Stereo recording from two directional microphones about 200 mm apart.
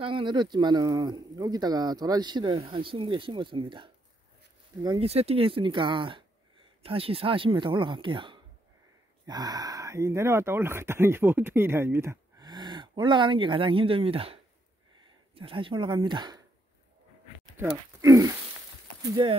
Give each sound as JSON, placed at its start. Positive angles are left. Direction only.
{"t": 0.0, "sound": "speech", "side_deg": -25}
{"t": 18.0, "sound": "a sound", "side_deg": -15}
{"t": 19.0, "sound": "speech", "side_deg": -20}